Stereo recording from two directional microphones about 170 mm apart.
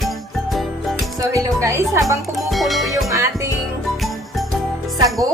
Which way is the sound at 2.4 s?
Centre (ahead or behind).